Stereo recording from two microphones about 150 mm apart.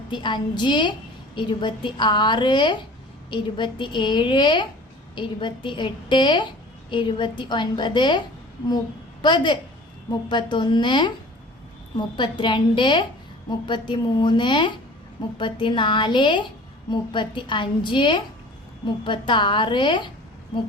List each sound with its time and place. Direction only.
0.1 s a woman's voice: 30° left (ahead or behind)
9.2 s a woman's voice: 30° left (ahead or behind)